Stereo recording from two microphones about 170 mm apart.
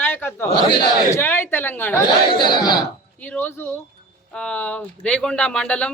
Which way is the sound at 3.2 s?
10° left (ahead or behind).